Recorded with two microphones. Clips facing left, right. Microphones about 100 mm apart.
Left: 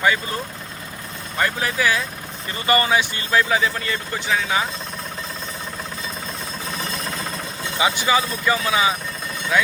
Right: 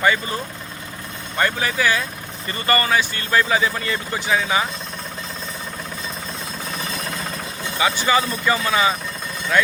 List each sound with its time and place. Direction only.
0.0 s speech: centre (ahead or behind)
1.4 s speech: centre (ahead or behind)
2.6 s speech: 15° left (ahead or behind)
3.3 s speech: centre (ahead or behind)
7.8 s speech: 20° left (ahead or behind)
8.0 s speech: centre (ahead or behind)